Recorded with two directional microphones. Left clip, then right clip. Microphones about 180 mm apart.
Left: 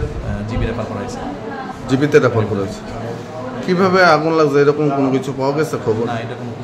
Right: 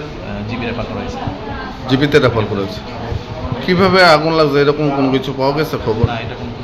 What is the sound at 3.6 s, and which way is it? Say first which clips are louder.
A man's voice: right 2 dB; 5° left (ahead or behind).